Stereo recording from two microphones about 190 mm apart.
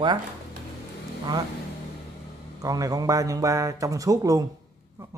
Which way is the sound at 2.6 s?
20° right (ahead or behind).